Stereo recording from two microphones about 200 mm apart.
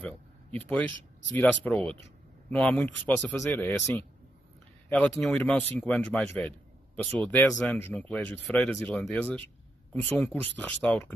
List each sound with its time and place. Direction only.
0.0 s speech: 10° left (ahead or behind)